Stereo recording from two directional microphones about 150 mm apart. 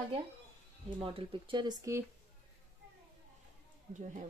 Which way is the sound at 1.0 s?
35° right (ahead or behind).